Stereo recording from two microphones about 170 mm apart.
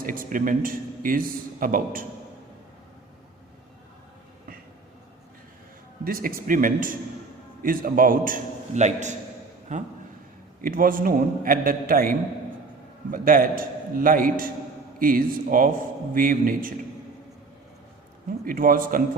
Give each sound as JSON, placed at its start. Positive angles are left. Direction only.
{"t": 0.0, "sound": "a man's voice", "side_deg": -55}
{"t": 6.1, "sound": "a man's voice", "side_deg": -60}
{"t": 18.3, "sound": "a man's voice", "side_deg": -55}